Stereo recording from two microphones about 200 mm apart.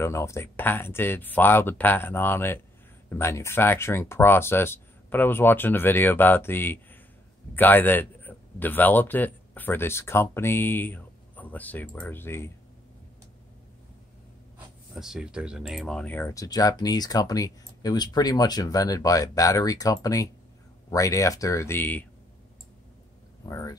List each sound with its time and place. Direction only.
0.0 s a man's voice: 15° left (ahead or behind)
15.0 s speech: 5° right (ahead or behind)
23.4 s speech: 15° left (ahead or behind)